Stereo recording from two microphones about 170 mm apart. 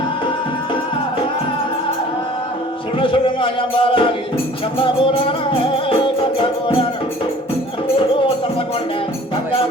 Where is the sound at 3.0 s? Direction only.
30° left (ahead or behind).